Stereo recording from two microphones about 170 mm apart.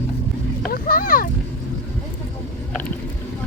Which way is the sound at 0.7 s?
60° left (ahead or behind).